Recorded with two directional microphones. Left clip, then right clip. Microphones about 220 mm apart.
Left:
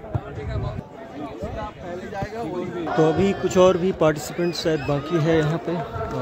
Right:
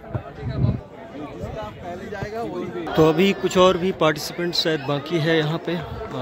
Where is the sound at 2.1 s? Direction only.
50° right (ahead or behind).